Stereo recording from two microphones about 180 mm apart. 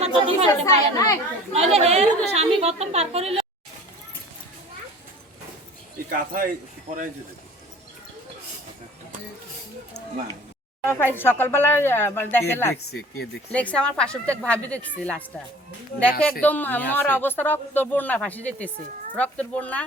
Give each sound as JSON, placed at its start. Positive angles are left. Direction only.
{"t": 0.0, "sound": "chatter", "side_deg": -30}
{"t": 0.6, "sound": "speech", "side_deg": 15}
{"t": 1.5, "sound": "a woman's voice", "side_deg": -35}
{"t": 6.1, "sound": "speech", "side_deg": -50}
{"t": 10.8, "sound": "speech", "side_deg": 10}
{"t": 12.7, "sound": "speech", "side_deg": 65}
{"t": 13.5, "sound": "speech", "side_deg": 10}
{"t": 16.4, "sound": "speech", "side_deg": 10}